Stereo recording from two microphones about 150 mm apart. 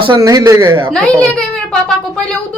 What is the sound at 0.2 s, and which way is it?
Speech, 20° right (ahead or behind).